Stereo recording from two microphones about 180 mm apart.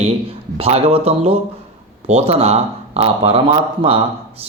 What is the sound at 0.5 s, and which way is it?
Speech, 35° right (ahead or behind).